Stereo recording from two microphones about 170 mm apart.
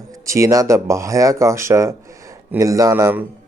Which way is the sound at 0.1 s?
20° right (ahead or behind).